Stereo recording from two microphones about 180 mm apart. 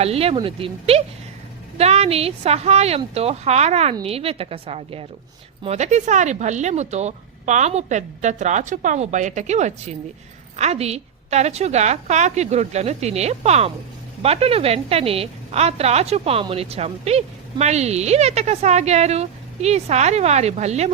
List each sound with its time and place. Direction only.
0.0 s a woman's voice: 35° right (ahead or behind)